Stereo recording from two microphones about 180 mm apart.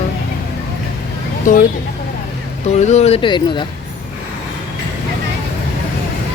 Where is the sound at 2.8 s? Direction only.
40° left (ahead or behind).